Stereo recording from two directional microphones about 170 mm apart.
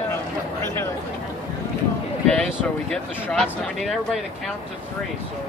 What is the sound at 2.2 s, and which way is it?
Speech, 5° left (ahead or behind).